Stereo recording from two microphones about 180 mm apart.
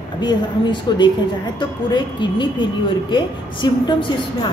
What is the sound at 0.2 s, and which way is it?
A woman's voice, 25° left (ahead or behind).